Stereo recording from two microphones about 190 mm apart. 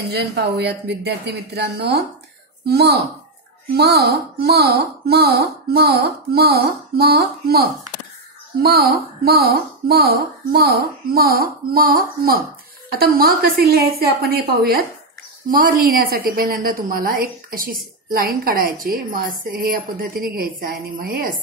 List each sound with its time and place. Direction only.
0.1 s speech: 60° right (ahead or behind)
8.6 s a woman's voice: 55° right (ahead or behind)